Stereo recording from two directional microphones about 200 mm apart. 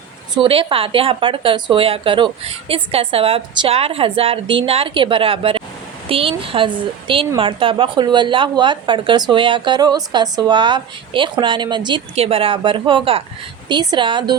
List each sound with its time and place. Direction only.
0.3 s a woman's voice: 25° right (ahead or behind)